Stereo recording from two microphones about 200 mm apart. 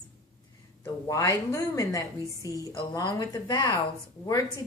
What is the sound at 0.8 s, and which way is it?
A woman's voice, 15° left (ahead or behind).